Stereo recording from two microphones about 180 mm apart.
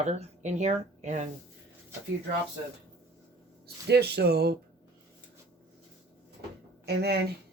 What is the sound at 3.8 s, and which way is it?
Speech, 65° right (ahead or behind).